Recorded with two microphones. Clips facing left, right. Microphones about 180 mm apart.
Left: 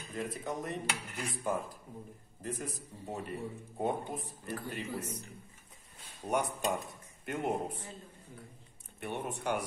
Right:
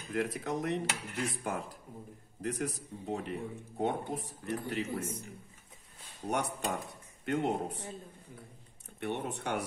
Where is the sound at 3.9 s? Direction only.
70° right (ahead or behind).